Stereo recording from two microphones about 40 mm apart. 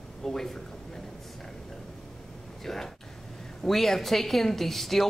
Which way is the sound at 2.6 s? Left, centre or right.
Centre.